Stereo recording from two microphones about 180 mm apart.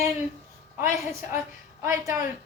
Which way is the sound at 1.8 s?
15° right (ahead or behind).